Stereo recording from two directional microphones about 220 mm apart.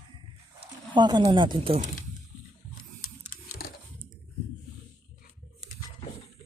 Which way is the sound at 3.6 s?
45° left (ahead or behind).